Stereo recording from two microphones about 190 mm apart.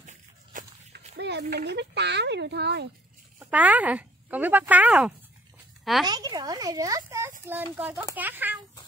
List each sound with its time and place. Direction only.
0.0 s a sound: 40° right (ahead or behind)
0.9 s speech: 60° right (ahead or behind)
3.3 s speech: 10° right (ahead or behind)
6.0 s speech: 20° right (ahead or behind)